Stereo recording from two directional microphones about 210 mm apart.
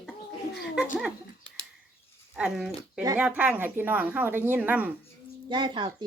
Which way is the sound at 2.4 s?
5° right (ahead or behind).